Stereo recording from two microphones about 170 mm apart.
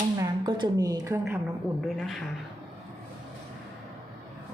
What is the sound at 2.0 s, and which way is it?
Speech, centre (ahead or behind).